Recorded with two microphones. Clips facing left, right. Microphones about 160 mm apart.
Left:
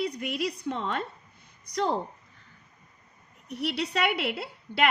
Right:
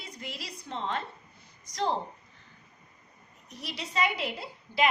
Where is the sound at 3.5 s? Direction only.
70° left (ahead or behind).